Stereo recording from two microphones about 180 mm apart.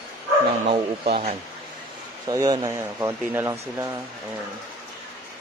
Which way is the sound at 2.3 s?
20° right (ahead or behind).